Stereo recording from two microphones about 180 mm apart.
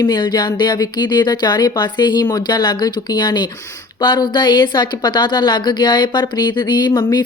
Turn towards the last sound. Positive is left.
turn(degrees=20)  # may be behind; listen again after turning